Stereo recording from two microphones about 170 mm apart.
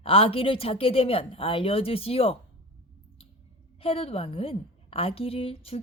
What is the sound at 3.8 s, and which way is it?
A woman's voice, 35° left (ahead or behind).